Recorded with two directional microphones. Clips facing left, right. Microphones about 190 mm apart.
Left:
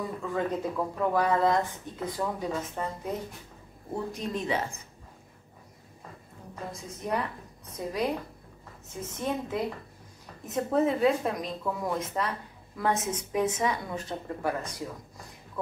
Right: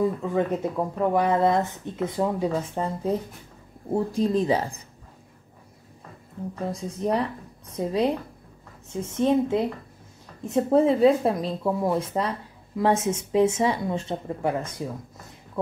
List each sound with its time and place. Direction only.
0.2 s speech: 25° right (ahead or behind)
6.7 s speech: 30° right (ahead or behind)
9.2 s speech: 25° right (ahead or behind)